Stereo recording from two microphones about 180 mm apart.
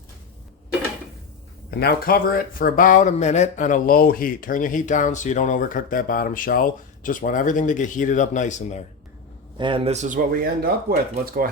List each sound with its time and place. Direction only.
1.8 s speech: 60° left (ahead or behind); by 8.8 s 40° left (ahead or behind)
9.6 s speech: 30° right (ahead or behind); by 10.9 s 55° right (ahead or behind)